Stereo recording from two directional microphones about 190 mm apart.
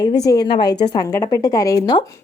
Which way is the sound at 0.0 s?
20° left (ahead or behind).